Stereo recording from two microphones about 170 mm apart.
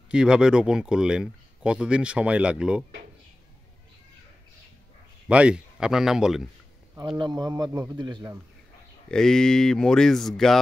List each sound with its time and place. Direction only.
0.1 s speech: 5° right (ahead or behind)
5.3 s speech: 5° right (ahead or behind)
7.2 s a man's voice: 25° right (ahead or behind)
9.1 s speech: 5° left (ahead or behind)